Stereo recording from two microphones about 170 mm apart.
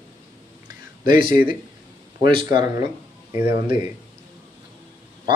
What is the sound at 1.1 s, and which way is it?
Speech, 30° right (ahead or behind).